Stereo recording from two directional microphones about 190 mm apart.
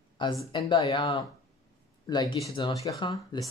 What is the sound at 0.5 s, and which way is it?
Speech, 25° left (ahead or behind).